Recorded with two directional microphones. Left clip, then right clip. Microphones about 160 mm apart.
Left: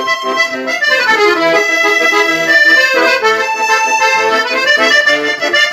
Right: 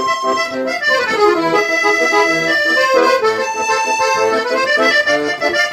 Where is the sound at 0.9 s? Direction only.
15° left (ahead or behind).